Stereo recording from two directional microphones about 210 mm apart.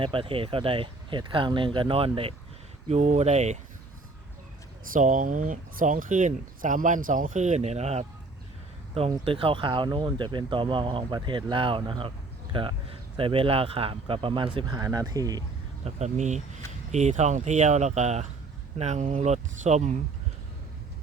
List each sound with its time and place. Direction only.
0.0 s speech: 25° right (ahead or behind)
4.9 s speech: 40° right (ahead or behind)
9.1 s speech: 25° right (ahead or behind)
15.8 s speech: 35° right (ahead or behind)